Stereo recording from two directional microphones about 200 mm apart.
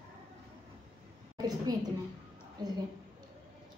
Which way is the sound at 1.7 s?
20° right (ahead or behind).